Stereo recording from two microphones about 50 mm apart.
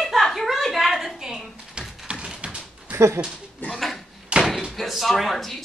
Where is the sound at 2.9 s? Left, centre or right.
Right.